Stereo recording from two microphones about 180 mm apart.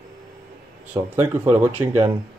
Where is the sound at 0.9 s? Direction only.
10° right (ahead or behind).